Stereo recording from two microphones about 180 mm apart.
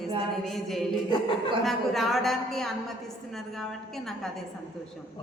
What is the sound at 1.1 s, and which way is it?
Speech, 30° left (ahead or behind).